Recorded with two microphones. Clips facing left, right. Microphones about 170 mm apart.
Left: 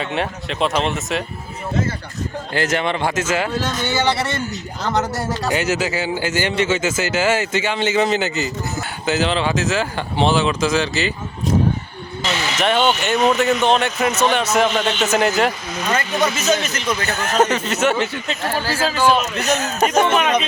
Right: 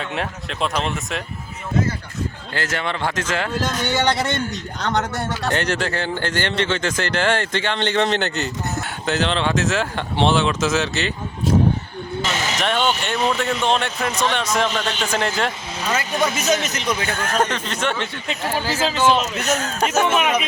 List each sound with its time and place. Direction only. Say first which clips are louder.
0.0 s a man's voice: left 3 dB; centre (ahead or behind)
2.6 s speech: left 5 dB; 20° left (ahead or behind)
3.2 s a man's voice: left 3 dB; 5° left (ahead or behind)
12.5 s a man's voice: left 5 dB; 5° left (ahead or behind)
15.9 s speech: left 2 dB; 5° right (ahead or behind)
17.1 s a man's voice: left 6 dB; 5° left (ahead or behind)
18.3 s a man's voice: left 1 dB; 15° right (ahead or behind)
19.4 s speech: left 3 dB; 5° left (ahead or behind)
19.9 s a man's voice: left 2 dB; 5° right (ahead or behind)